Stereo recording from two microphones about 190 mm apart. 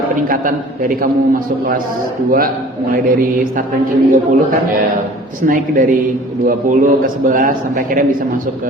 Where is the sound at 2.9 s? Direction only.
45° right (ahead or behind).